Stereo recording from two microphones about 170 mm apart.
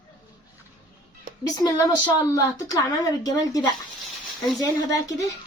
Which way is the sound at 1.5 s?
25° left (ahead or behind).